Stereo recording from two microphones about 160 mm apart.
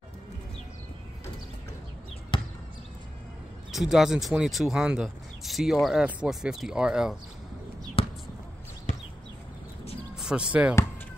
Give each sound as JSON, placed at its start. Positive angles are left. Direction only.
{"t": 2.3, "sound": "basketball bounce", "side_deg": 30}
{"t": 3.7, "sound": "speech", "side_deg": -5}
{"t": 8.0, "sound": "basketball bounce", "side_deg": 35}
{"t": 10.1, "sound": "speech", "side_deg": -5}